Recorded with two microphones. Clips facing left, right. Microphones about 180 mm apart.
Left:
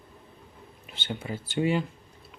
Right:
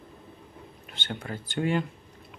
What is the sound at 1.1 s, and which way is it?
Speech, 5° left (ahead or behind).